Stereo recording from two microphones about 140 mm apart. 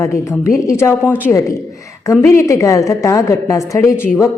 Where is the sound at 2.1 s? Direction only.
20° left (ahead or behind).